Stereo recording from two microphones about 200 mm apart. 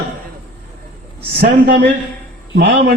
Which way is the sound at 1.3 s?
45° right (ahead or behind).